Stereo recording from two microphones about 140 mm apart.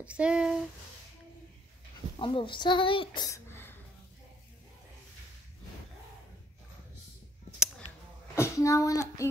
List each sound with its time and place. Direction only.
0.0 s speech: 10° right (ahead or behind)
2.1 s speech: 40° left (ahead or behind)
3.3 s a sound: 15° left (ahead or behind)
8.4 s a child's voice: 20° left (ahead or behind)